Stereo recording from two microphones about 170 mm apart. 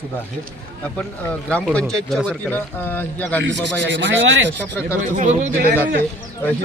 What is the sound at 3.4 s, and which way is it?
Speech, 90° right.